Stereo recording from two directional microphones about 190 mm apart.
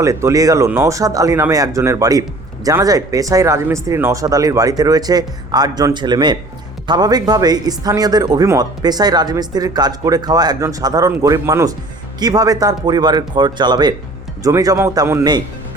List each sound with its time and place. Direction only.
0.0 s speech: 15° right (ahead or behind)